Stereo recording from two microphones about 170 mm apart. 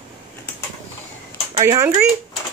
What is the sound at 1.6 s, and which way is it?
Speech, 15° right (ahead or behind).